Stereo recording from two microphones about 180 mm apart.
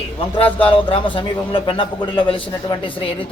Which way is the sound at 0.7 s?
30° left (ahead or behind).